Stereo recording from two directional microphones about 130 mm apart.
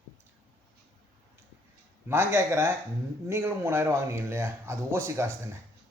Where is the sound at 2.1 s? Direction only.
20° right (ahead or behind).